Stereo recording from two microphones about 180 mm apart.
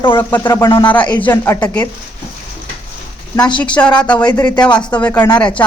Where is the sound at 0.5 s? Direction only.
25° left (ahead or behind).